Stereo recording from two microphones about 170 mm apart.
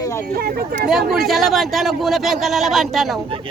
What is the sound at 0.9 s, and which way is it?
Speech, centre (ahead or behind).